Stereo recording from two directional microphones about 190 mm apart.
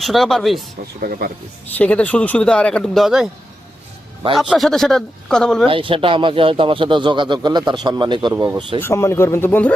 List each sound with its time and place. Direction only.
0.0 s speech: centre (ahead or behind)
0.9 s speech: 45° right (ahead or behind)
1.8 s speech: 5° left (ahead or behind)
4.4 s speech: centre (ahead or behind)
5.6 s speech: 25° right (ahead or behind)
8.8 s speech: 15° left (ahead or behind)